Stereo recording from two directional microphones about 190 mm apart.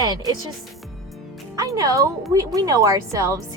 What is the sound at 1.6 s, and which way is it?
Speech, 20° right (ahead or behind).